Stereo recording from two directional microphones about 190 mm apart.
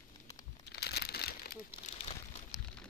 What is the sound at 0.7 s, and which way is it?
Crumpling, 60° left (ahead or behind).